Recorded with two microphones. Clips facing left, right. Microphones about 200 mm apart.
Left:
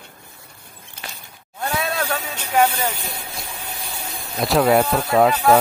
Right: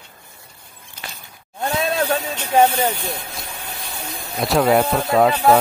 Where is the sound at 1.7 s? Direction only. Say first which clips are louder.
Right 5 dB; 30° right (ahead or behind).